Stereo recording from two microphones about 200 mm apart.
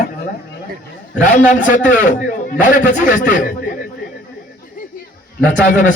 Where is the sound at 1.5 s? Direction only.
40° left (ahead or behind).